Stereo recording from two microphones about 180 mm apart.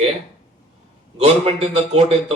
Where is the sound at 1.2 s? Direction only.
35° right (ahead or behind).